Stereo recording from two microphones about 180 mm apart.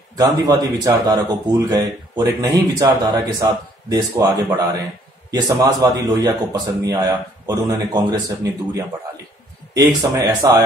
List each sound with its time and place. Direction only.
0.2 s a man's voice: 20° right (ahead or behind)